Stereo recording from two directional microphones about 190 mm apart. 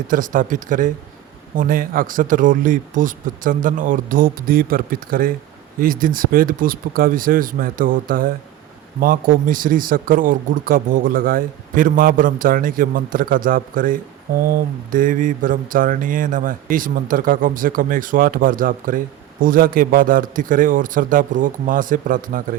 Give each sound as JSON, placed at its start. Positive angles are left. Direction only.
{"t": 0.1, "sound": "speech", "side_deg": -45}